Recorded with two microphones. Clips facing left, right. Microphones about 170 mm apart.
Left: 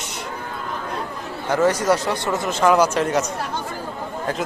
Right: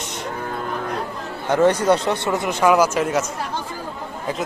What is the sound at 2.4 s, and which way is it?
Speech, 10° right (ahead or behind).